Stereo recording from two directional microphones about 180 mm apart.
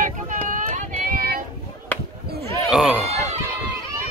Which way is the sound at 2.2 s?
60° right (ahead or behind).